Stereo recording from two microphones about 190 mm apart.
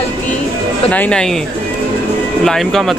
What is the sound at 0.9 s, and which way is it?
Speech, 5° left (ahead or behind).